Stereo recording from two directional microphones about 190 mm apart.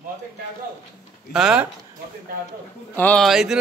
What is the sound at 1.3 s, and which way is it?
Speech, 5° right (ahead or behind).